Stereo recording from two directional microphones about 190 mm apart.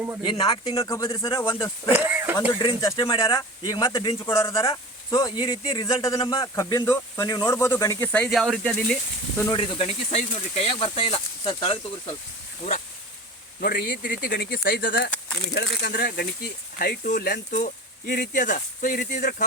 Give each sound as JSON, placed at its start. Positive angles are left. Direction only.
{"t": 0.3, "sound": "speech", "side_deg": 25}
{"t": 1.4, "sound": "a man's voice", "side_deg": 15}
{"t": 1.9, "sound": "speech", "side_deg": -10}
{"t": 2.6, "sound": "a man's voice", "side_deg": 20}
{"t": 9.5, "sound": "speech", "side_deg": 30}
{"t": 13.6, "sound": "speech", "side_deg": 50}
{"t": 18.1, "sound": "speech", "side_deg": 60}
{"t": 18.4, "sound": "speech", "side_deg": 45}